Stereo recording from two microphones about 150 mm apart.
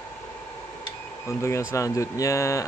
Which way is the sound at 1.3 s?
20° left (ahead or behind).